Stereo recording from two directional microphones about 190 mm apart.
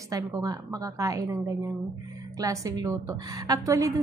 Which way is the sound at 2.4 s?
15° right (ahead or behind).